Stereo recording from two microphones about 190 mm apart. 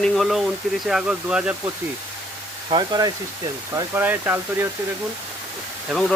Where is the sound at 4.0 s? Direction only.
10° right (ahead or behind).